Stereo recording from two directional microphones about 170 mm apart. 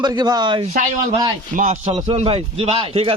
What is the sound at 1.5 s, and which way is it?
A man's voice, 45° right (ahead or behind).